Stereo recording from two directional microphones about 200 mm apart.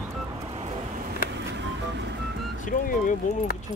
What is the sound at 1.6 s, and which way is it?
Vehicle, 60° right (ahead or behind).